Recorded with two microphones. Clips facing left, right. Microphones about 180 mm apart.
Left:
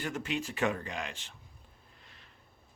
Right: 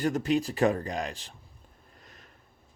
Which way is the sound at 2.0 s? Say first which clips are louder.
Right 7 dB; 45° right (ahead or behind).